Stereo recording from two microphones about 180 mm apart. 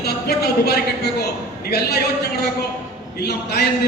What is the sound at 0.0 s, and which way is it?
Speech, 65° left (ahead or behind).